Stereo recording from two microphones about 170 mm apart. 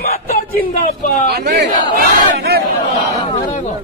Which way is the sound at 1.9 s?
65° right (ahead or behind).